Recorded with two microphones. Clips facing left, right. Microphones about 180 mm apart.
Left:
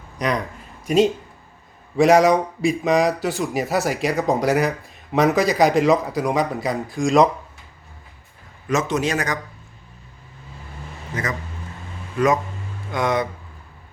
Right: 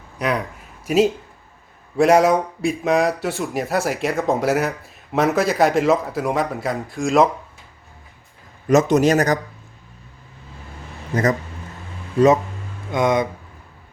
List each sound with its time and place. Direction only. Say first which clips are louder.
0.2 s a man's voice: right 1 dB; 5° right (ahead or behind)
8.6 s a man's voice: right 7 dB; 40° right (ahead or behind)
11.1 s speech: right 8 dB; 40° right (ahead or behind)
12.9 s speech: right 3 dB; 20° right (ahead or behind)